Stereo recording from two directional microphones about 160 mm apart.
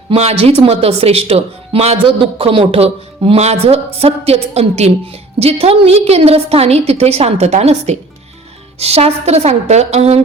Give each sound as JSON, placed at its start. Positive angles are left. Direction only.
{"t": 0.1, "sound": "speech", "side_deg": -40}